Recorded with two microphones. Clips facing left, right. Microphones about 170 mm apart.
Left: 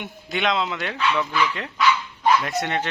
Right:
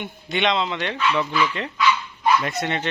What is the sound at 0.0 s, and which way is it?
Speech, centre (ahead or behind).